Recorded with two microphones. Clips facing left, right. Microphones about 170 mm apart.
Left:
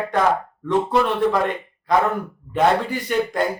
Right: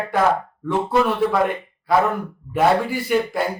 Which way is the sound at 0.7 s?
5° right (ahead or behind).